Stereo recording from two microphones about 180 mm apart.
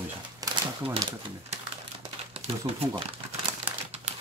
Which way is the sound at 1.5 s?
30° right (ahead or behind).